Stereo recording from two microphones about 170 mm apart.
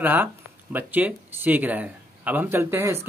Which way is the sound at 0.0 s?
10° right (ahead or behind).